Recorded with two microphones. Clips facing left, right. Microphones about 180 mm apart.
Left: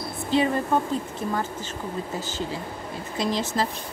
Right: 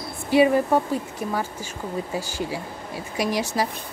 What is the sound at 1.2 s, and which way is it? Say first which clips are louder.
Speech: even; 10° right (ahead or behind).